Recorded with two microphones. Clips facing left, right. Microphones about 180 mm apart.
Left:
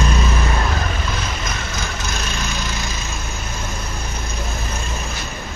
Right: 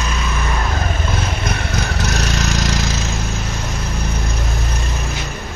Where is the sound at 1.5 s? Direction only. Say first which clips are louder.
Right 5 dB; 65° right (ahead or behind); by 3.0 s 90° right.